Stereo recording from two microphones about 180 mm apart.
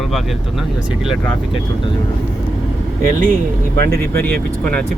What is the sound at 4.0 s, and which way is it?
Speech, 10° left (ahead or behind).